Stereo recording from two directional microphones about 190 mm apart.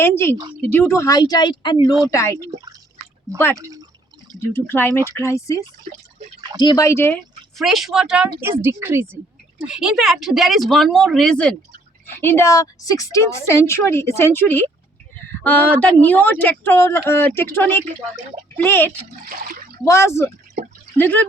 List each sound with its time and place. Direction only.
0.0 s speech: 10° left (ahead or behind)
3.3 s speech: 10° left (ahead or behind)
3.6 s speech: 20° right (ahead or behind)
4.5 s speech: 10° left (ahead or behind)
5.9 s speech: 40° right (ahead or behind)
6.6 s a woman's voice: 20° left (ahead or behind)